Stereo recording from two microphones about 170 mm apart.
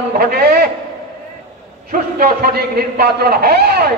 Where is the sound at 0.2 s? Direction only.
65° right (ahead or behind).